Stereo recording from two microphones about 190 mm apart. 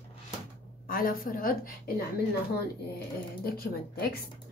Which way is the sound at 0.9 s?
50° left (ahead or behind).